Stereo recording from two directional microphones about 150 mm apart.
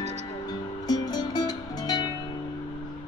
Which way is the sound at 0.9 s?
25° left (ahead or behind).